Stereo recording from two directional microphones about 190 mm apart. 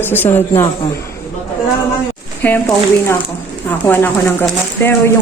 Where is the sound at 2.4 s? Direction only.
10° left (ahead or behind).